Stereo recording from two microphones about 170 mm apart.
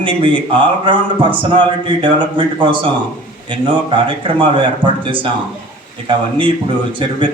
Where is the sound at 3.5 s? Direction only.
30° right (ahead or behind).